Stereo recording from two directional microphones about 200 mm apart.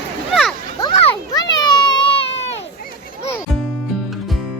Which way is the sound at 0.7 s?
25° left (ahead or behind).